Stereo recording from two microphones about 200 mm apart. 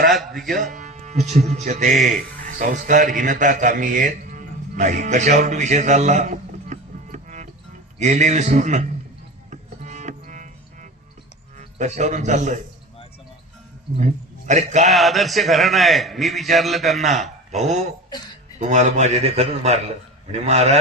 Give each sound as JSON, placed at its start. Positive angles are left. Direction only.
{"t": 0.1, "sound": "speech", "side_deg": 0}
{"t": 0.5, "sound": "a man's voice", "side_deg": -40}
{"t": 9.5, "sound": "music", "side_deg": -35}
{"t": 11.5, "sound": "a man's voice", "side_deg": -35}
{"t": 13.9, "sound": "a man's voice", "side_deg": -35}
{"t": 14.8, "sound": "a man's voice", "side_deg": 0}
{"t": 17.0, "sound": "a man's voice", "side_deg": -35}